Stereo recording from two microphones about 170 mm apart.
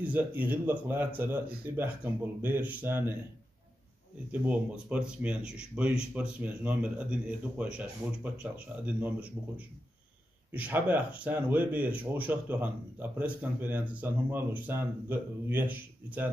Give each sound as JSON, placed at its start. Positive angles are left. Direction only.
{"t": 0.0, "sound": "speech", "side_deg": -10}
{"t": 4.3, "sound": "speech", "side_deg": -10}
{"t": 10.5, "sound": "speech", "side_deg": -10}